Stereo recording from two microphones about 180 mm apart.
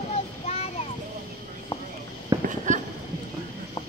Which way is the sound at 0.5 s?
35° left (ahead or behind).